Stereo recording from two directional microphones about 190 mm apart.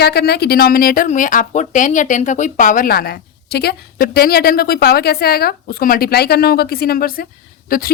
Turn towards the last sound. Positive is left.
turn(degrees=50)  # may be behind; listen again after turning